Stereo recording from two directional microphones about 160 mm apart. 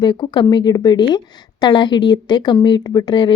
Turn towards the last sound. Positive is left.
turn(degrees=30)  # may be behind; listen again after turning